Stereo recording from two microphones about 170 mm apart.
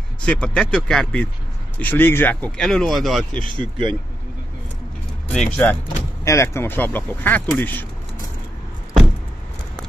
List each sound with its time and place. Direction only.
0.2 s speech: 5° left (ahead or behind)
3.4 s speech: 30° right (ahead or behind)
5.3 s speech: 5° left (ahead or behind)
6.2 s speech: 15° left (ahead or behind)